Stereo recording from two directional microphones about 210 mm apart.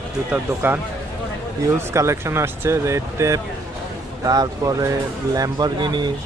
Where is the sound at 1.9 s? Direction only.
15° right (ahead or behind).